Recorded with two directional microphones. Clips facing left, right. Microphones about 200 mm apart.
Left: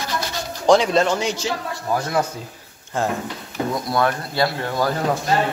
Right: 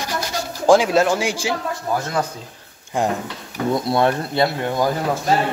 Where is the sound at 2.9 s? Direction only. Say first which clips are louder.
Right 2 dB; 15° right (ahead or behind).